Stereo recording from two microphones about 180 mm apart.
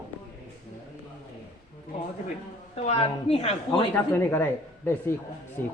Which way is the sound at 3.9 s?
10° left (ahead or behind).